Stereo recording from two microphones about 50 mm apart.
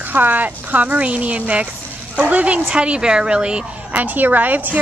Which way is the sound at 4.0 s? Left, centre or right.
Right.